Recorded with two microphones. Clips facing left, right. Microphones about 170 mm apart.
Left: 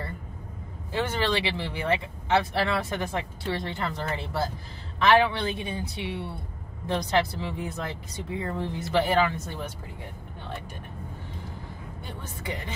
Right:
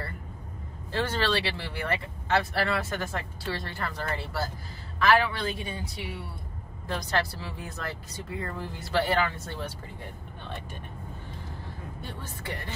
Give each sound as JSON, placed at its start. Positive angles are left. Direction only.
{"t": 0.9, "sound": "speech", "side_deg": 20}
{"t": 12.0, "sound": "speech", "side_deg": 20}